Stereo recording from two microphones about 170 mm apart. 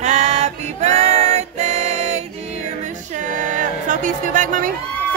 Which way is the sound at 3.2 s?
45° right (ahead or behind).